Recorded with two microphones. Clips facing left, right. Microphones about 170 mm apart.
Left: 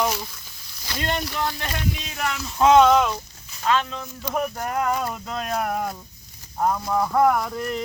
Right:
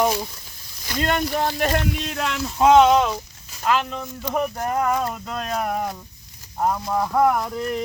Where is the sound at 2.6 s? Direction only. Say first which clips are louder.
Right 1 dB; 10° right (ahead or behind).